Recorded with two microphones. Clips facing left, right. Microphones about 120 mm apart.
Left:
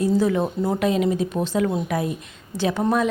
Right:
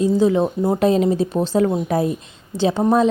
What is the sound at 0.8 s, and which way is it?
A woman's voice, 35° right (ahead or behind).